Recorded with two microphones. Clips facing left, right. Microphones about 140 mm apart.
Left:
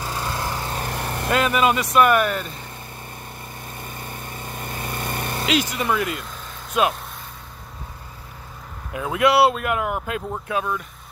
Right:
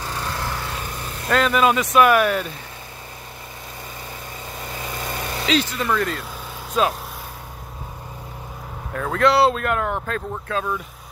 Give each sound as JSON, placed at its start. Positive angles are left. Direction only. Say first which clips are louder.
{"t": 0.3, "sound": "vehicle", "louder": "left 1 dB", "side_deg": 15}
{"t": 0.8, "sound": "vehicle", "louder": "left 4 dB", "side_deg": 60}
{"t": 1.3, "sound": "speech", "louder": "right 2 dB", "side_deg": 5}
{"t": 4.5, "sound": "vehicle", "louder": "left 1 dB", "side_deg": 55}
{"t": 5.5, "sound": "speech", "louder": "right 1 dB", "side_deg": 15}
{"t": 6.7, "sound": "speech", "louder": "even", "side_deg": 5}
{"t": 8.9, "sound": "speech", "louder": "even", "side_deg": 10}